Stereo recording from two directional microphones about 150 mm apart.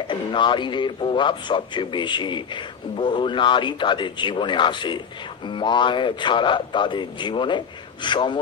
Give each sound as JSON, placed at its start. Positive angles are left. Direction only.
{"t": 0.1, "sound": "a man's voice", "side_deg": 30}